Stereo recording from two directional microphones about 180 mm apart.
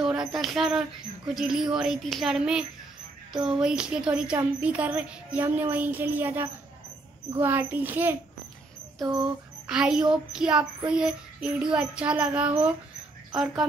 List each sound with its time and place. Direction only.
0.0 s a sound: 5° right (ahead or behind)
1.3 s child singing: centre (ahead or behind)
3.4 s speech: 5° right (ahead or behind)
9.0 s rodents: 25° right (ahead or behind)
9.7 s child singing: 5° right (ahead or behind)